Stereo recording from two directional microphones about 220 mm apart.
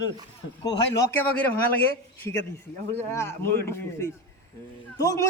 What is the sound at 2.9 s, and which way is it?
Speech, 10° left (ahead or behind).